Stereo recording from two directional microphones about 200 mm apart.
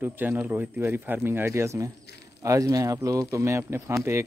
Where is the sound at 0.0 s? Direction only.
10° right (ahead or behind).